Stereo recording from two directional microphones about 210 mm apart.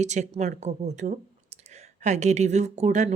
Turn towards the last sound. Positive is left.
turn(degrees=-35)  # may be behind; listen again after turning